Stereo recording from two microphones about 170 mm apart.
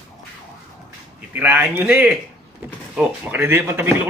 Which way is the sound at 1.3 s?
10° right (ahead or behind).